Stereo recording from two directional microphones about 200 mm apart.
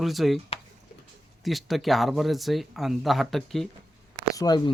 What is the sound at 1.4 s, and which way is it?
Speech, centre (ahead or behind).